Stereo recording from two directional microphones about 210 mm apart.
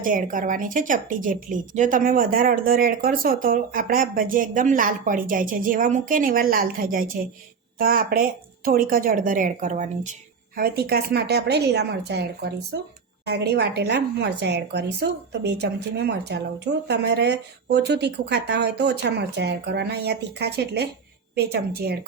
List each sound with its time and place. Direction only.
0.0 s a woman's voice: 40° right (ahead or behind)